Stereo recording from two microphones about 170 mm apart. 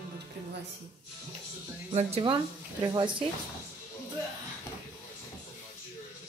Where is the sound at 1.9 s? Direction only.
35° right (ahead or behind).